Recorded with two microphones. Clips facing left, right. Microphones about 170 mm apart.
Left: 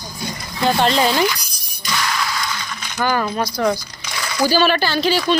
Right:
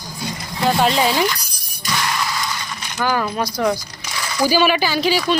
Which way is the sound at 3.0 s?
5° right (ahead or behind).